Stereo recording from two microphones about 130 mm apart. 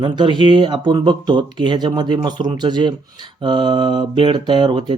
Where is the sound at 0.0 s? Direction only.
40° right (ahead or behind).